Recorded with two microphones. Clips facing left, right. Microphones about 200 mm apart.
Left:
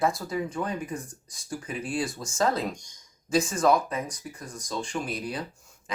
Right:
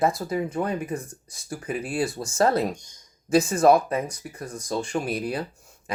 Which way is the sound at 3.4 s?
60° right (ahead or behind).